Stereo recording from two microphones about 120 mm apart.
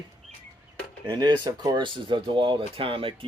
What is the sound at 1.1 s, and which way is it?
Speech, 40° right (ahead or behind).